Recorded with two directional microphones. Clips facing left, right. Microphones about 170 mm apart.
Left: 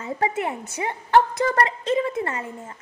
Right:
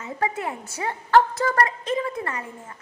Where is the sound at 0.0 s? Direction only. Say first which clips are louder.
Left 3 dB; 25° left (ahead or behind).